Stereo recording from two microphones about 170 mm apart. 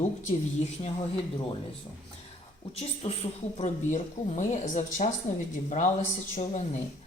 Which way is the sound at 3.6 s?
45° left (ahead or behind).